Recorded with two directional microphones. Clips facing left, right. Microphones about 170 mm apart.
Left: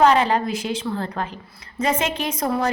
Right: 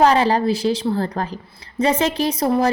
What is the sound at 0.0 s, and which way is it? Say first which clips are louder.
Speech: right 2 dB; 35° right (ahead or behind).